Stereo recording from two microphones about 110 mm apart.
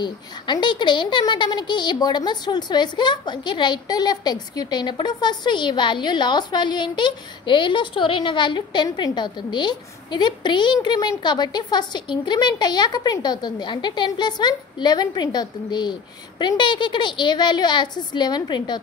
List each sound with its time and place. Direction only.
0.0 s a child's voice: 45° left (ahead or behind)